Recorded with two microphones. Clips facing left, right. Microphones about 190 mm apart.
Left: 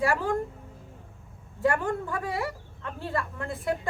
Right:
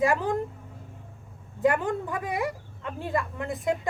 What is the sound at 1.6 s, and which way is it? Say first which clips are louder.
A woman's voice: right 2 dB; 20° right (ahead or behind).